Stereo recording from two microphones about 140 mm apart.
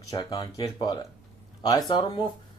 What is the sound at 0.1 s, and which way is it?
Speech, 25° left (ahead or behind).